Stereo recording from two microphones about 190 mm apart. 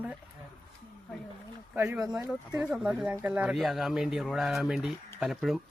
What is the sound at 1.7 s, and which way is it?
Speech, 15° right (ahead or behind).